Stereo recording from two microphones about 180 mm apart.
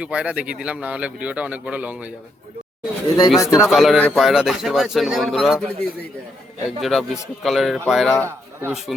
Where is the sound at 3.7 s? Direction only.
Centre (ahead or behind).